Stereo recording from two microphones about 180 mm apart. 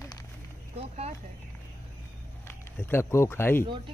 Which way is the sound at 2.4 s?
10° left (ahead or behind).